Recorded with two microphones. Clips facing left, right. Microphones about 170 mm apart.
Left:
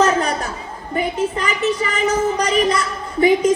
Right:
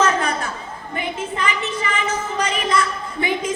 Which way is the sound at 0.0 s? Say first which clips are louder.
Left 3 dB; 35° left (ahead or behind).